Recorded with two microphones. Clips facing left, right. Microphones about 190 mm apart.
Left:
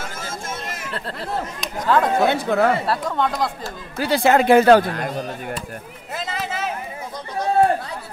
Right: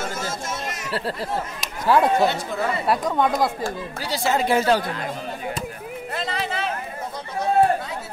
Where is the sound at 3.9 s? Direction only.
55° left (ahead or behind).